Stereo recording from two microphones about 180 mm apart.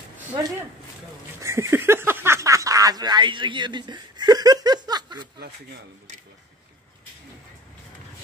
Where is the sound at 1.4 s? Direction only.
15° right (ahead or behind).